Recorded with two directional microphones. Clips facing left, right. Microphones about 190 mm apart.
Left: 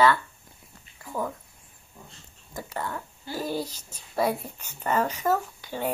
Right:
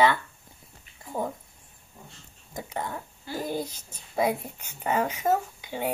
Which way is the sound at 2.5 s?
15° right (ahead or behind).